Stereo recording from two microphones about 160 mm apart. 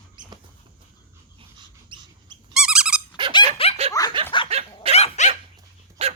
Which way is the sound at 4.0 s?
20° left (ahead or behind).